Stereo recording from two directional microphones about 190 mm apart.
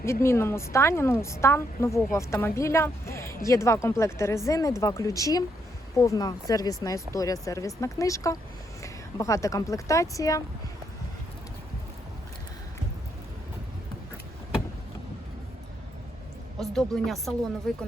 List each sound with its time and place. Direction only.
0.0 s a woman's voice: 15° left (ahead or behind)
16.6 s speech: centre (ahead or behind)